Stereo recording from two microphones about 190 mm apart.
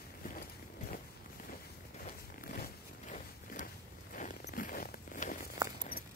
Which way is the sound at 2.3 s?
50° left (ahead or behind).